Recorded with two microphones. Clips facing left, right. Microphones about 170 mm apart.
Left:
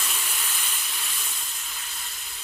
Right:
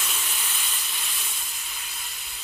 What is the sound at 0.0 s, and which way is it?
Steam, centre (ahead or behind).